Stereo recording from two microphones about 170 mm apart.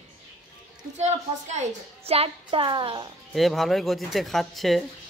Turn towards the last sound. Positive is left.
turn(degrees=0)  # may be behind; listen again after turning